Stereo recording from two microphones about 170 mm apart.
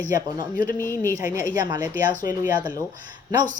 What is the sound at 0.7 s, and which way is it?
Speech, 15° left (ahead or behind).